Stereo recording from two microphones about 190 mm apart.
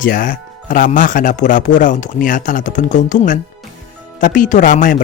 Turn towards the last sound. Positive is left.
turn(degrees=40)  # may be behind; listen again after turning